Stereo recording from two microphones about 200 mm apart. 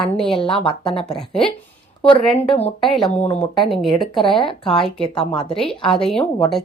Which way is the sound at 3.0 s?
30° left (ahead or behind).